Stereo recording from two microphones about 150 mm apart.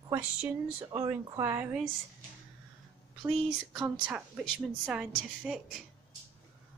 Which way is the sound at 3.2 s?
5° right (ahead or behind).